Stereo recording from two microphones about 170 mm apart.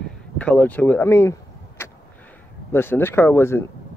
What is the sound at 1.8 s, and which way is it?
Vehicle, 15° left (ahead or behind).